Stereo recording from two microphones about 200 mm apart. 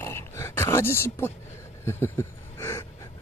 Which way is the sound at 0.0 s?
15° left (ahead or behind).